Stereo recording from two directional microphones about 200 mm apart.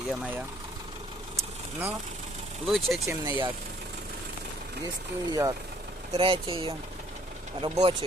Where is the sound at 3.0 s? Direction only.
15° right (ahead or behind).